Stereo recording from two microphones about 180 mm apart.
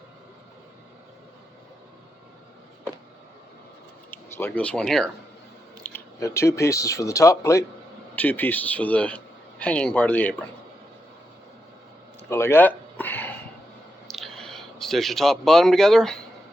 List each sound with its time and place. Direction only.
4.1 s speech: 10° left (ahead or behind)
5.9 s a man's voice: 15° left (ahead or behind)
12.3 s a sound: 15° left (ahead or behind)
14.1 s speech: centre (ahead or behind)